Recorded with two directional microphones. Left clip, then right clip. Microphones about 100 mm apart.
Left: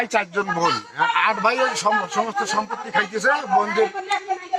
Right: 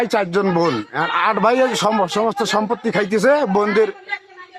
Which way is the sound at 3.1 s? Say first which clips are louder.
Right 7 dB; 50° right (ahead or behind).